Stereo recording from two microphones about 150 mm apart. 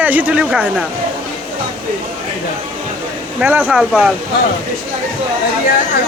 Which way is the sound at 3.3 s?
10° right (ahead or behind).